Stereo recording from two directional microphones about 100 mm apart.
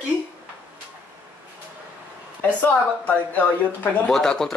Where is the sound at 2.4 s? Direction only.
20° left (ahead or behind).